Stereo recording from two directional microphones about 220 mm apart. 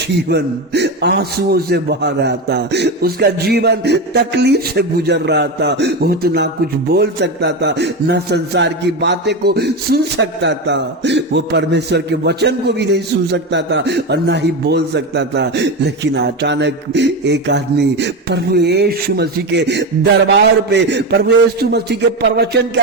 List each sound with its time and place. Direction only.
0.3 s a man's voice: 50° right (ahead or behind)